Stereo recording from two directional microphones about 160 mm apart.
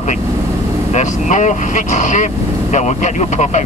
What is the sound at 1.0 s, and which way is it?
Speech, 50° left (ahead or behind).